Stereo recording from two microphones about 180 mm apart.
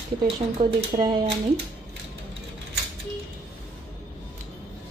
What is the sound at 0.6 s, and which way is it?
Speech, 30° right (ahead or behind).